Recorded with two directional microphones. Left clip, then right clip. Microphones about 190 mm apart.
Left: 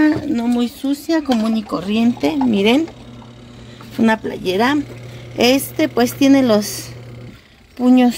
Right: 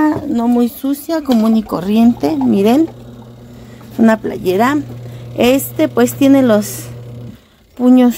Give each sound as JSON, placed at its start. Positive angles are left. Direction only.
{"t": 0.1, "sound": "speech", "side_deg": -5}
{"t": 0.6, "sound": "speech", "side_deg": -15}
{"t": 4.0, "sound": "speech", "side_deg": -10}